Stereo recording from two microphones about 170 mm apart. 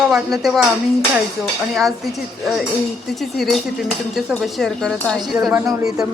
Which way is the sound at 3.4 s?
Centre (ahead or behind).